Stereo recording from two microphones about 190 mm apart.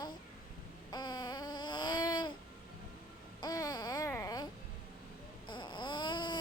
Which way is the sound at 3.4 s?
20° left (ahead or behind).